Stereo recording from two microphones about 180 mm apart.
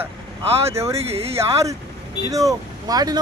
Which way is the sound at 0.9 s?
35° right (ahead or behind).